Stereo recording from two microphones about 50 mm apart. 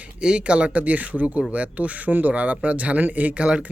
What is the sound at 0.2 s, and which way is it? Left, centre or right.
Speech, centre.